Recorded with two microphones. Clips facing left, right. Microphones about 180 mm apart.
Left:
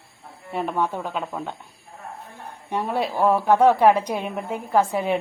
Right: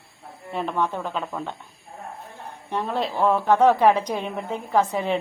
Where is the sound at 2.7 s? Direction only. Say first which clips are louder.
Left 1 dB; 10° left (ahead or behind).